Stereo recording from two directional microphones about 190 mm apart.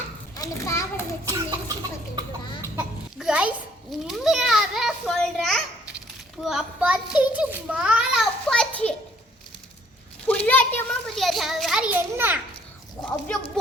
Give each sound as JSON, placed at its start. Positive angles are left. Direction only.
{"t": 0.3, "sound": "a child's voice", "side_deg": 15}
{"t": 1.2, "sound": "a sound", "side_deg": -20}
{"t": 4.0, "sound": "children playing", "side_deg": 0}
{"t": 6.4, "sound": "a child's voice", "side_deg": 0}
{"t": 10.2, "sound": "a sound", "side_deg": 10}
{"t": 10.8, "sound": "a child's voice", "side_deg": 0}
{"t": 13.1, "sound": "speech", "side_deg": 5}